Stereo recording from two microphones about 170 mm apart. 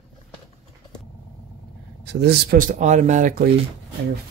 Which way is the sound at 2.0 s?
80° right.